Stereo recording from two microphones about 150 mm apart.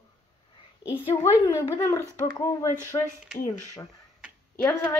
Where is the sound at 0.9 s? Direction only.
10° right (ahead or behind).